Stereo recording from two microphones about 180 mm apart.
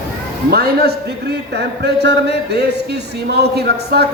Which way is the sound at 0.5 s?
60° right (ahead or behind).